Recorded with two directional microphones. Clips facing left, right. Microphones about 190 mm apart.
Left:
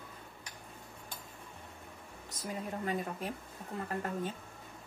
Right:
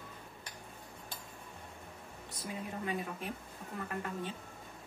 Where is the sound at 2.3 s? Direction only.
45° left (ahead or behind).